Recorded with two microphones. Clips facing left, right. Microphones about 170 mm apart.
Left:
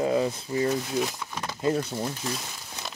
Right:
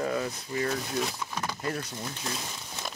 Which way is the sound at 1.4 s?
25° left (ahead or behind).